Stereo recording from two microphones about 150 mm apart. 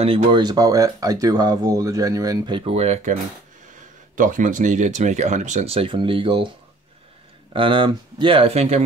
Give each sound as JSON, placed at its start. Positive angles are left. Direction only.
{"t": 0.0, "sound": "speech", "side_deg": -35}
{"t": 4.2, "sound": "speech", "side_deg": -60}
{"t": 7.5, "sound": "speech", "side_deg": -35}